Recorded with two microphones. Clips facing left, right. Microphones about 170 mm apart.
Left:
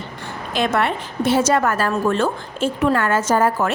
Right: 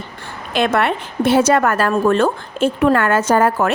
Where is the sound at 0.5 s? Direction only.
65° right (ahead or behind).